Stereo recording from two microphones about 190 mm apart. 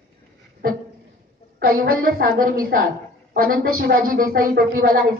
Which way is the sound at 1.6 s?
50° right (ahead or behind).